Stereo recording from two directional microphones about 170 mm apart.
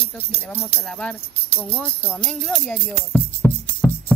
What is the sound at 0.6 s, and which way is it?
Speech, 10° left (ahead or behind).